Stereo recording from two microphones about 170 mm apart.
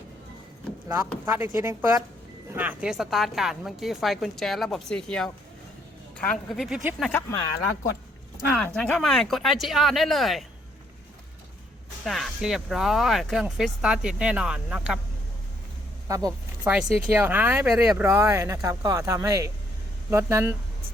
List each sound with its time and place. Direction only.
1.2 s speech: 15° right (ahead or behind)
7.1 s speech: 15° left (ahead or behind)
8.5 s speech: 5° left (ahead or behind)
12.0 s speech: centre (ahead or behind)
16.0 s speech: 20° right (ahead or behind)
16.6 s speech: 10° right (ahead or behind)